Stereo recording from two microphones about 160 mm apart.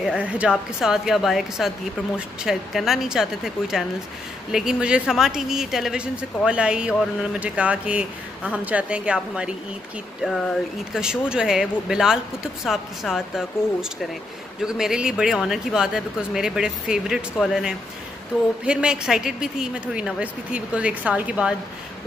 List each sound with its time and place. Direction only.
0.0 s speech: 5° right (ahead or behind)
11.0 s a woman's voice: 5° right (ahead or behind)